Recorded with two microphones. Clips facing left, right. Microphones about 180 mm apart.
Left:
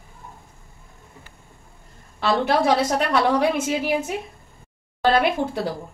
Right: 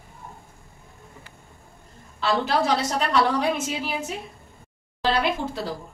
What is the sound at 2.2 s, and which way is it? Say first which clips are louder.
Speech: left 3 dB; 60° left (ahead or behind).